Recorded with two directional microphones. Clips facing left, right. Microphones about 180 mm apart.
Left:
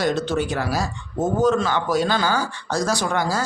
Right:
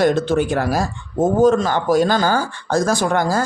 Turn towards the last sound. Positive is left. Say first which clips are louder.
# right 5 dB
turn(degrees=-50)  # may be behind; listen again after turning